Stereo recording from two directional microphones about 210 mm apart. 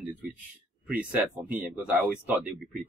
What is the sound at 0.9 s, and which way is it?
Speech, 5° right (ahead or behind).